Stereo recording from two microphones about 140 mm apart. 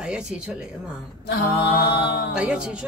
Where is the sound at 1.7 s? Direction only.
90° left.